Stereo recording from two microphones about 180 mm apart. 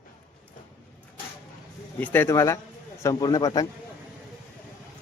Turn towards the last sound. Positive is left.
turn(degrees=20)  # may be behind; listen again after turning